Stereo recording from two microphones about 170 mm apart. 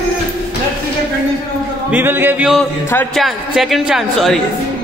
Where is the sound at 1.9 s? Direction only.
10° right (ahead or behind).